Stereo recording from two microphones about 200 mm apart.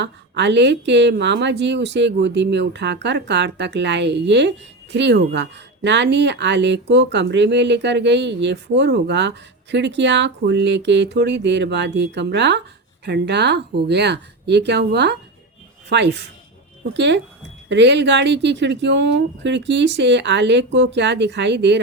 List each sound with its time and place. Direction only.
0.0 s speech: 60° right (ahead or behind)